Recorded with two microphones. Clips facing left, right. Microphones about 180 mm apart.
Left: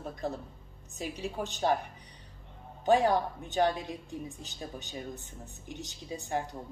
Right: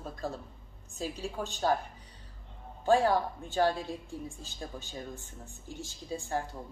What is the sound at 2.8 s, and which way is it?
A woman's voice, 20° left (ahead or behind).